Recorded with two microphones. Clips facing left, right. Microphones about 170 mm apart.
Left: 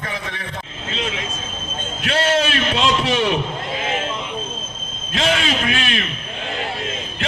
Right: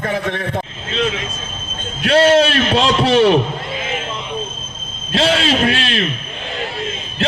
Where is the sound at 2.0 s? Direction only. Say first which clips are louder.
Right 8 dB; 35° right (ahead or behind).